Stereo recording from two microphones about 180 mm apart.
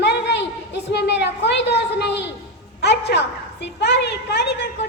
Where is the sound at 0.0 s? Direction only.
70° left (ahead or behind).